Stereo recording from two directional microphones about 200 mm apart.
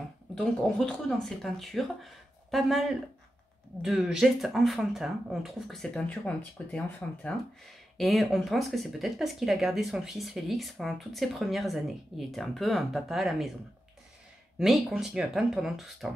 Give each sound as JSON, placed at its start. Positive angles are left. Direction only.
{"t": 0.3, "sound": "speech", "side_deg": 5}
{"t": 14.6, "sound": "speech", "side_deg": 0}